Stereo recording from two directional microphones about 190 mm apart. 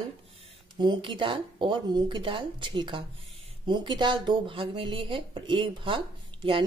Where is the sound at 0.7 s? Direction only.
25° right (ahead or behind).